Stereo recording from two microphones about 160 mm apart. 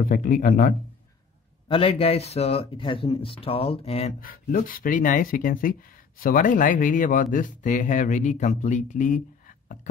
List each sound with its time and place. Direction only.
0.0 s speech: 60° left (ahead or behind)
1.7 s speech: 35° left (ahead or behind)
4.2 s speech: 60° left (ahead or behind)